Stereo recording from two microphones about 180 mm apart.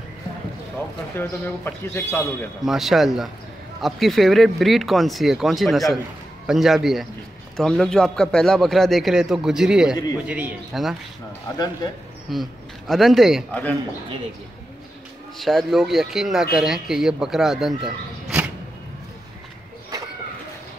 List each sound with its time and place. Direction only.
1.1 s speech: 15° left (ahead or behind)
2.6 s speech: centre (ahead or behind)
11.5 s a man's voice: 20° left (ahead or behind)
12.3 s a man's voice: centre (ahead or behind)
13.5 s speech: 10° left (ahead or behind)
15.3 s speech: centre (ahead or behind)